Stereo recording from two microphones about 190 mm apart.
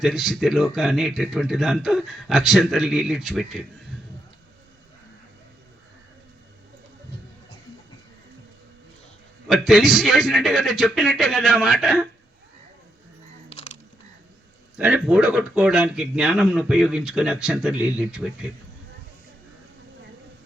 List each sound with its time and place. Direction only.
0.0 s speech: centre (ahead or behind)
9.5 s speech: centre (ahead or behind)
13.5 s a sound: 35° left (ahead or behind)
14.8 s speech: 5° right (ahead or behind)